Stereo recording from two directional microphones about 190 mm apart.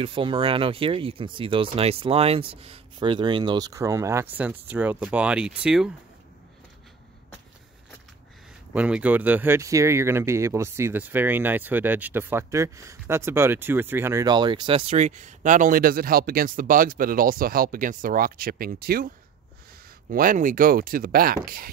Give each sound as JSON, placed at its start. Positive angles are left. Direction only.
{"t": 0.0, "sound": "speech", "side_deg": -25}
{"t": 8.7, "sound": "speech", "side_deg": -5}